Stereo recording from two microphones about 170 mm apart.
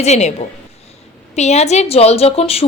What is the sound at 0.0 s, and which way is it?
A woman's voice, 40° left (ahead or behind).